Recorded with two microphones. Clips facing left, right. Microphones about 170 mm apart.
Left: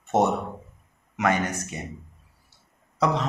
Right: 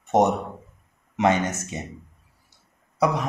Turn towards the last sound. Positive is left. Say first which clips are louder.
# right 2 dB
turn(degrees=-10)  # may be behind; listen again after turning